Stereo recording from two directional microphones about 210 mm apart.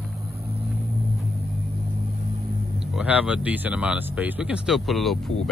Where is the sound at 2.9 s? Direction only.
5° right (ahead or behind).